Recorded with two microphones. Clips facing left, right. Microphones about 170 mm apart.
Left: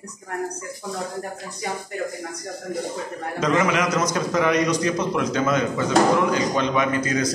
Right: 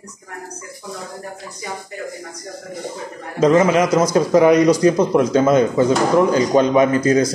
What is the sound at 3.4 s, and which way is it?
A man's voice, 30° right (ahead or behind).